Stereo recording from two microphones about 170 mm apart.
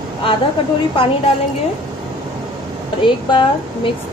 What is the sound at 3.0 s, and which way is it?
Speech, 30° left (ahead or behind).